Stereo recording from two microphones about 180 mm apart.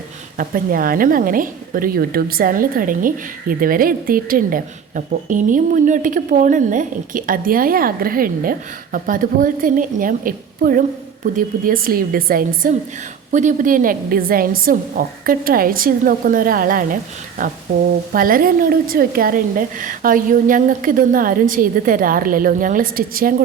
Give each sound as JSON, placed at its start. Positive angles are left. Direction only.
{"t": 0.3, "sound": "a woman's voice", "side_deg": -50}